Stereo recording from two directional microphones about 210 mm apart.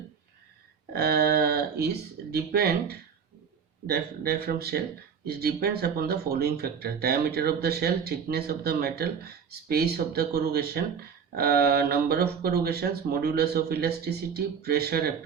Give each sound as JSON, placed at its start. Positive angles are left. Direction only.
{"t": 0.9, "sound": "speech", "side_deg": -50}